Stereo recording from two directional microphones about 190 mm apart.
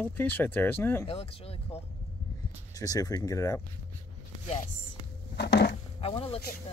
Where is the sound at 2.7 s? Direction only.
20° left (ahead or behind).